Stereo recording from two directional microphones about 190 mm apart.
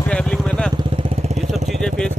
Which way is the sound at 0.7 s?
25° right (ahead or behind).